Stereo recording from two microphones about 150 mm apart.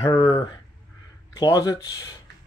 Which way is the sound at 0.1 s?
25° left (ahead or behind).